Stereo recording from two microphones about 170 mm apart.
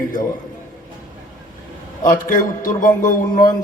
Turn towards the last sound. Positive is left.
turn(degrees=50)  # may be behind; listen again after turning